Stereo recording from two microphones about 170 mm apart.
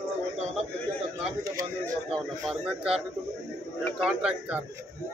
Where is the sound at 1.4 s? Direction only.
20° right (ahead or behind).